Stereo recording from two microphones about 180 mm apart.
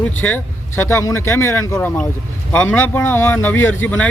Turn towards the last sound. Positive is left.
turn(degrees=10)  # may be behind; listen again after turning